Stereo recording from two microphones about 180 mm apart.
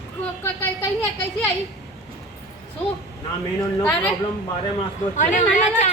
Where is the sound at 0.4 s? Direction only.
15° left (ahead or behind).